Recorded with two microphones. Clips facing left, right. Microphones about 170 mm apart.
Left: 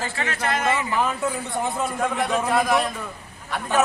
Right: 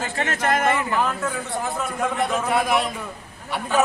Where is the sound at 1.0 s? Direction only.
10° left (ahead or behind).